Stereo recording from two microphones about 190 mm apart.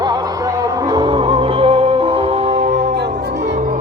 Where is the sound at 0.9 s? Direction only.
20° right (ahead or behind).